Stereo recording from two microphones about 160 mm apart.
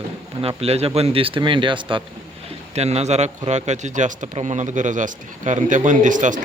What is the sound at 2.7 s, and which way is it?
Speech, 40° right (ahead or behind).